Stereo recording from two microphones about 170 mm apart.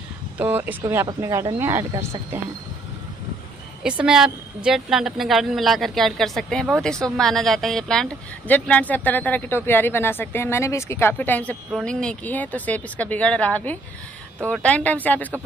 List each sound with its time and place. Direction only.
0.4 s speech: 10° right (ahead or behind)
3.8 s a woman's voice: 5° right (ahead or behind)